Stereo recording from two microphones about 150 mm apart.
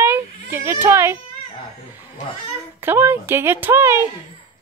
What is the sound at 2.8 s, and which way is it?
Speech, 15° right (ahead or behind).